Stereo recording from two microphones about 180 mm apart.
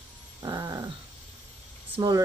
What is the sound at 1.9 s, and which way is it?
Speech, 20° right (ahead or behind).